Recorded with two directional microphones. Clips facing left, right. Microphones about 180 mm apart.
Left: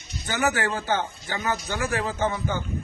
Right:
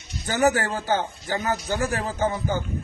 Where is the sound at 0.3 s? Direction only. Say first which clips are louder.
Right 4 dB; 40° right (ahead or behind).